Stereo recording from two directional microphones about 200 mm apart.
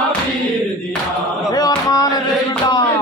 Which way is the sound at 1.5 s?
20° left (ahead or behind).